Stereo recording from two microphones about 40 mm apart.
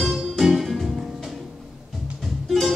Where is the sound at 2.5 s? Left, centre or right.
Centre.